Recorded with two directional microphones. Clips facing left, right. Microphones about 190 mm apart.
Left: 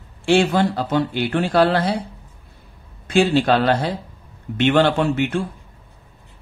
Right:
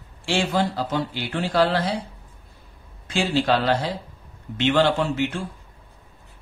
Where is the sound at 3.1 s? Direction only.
55° left (ahead or behind).